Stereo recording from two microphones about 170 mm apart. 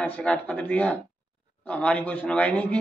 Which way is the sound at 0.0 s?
5° left (ahead or behind).